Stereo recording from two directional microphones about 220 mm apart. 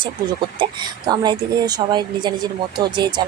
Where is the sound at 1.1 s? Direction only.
20° right (ahead or behind).